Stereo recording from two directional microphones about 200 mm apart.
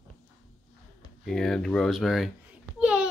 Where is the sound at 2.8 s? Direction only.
5° right (ahead or behind).